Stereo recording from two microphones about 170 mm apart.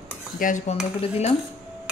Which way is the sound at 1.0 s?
35° left (ahead or behind).